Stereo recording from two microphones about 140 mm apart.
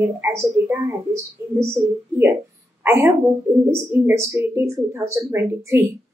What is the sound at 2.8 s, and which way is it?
Speech, 20° right (ahead or behind).